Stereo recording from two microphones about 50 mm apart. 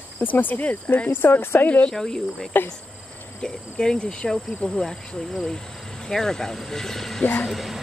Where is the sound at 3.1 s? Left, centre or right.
Left.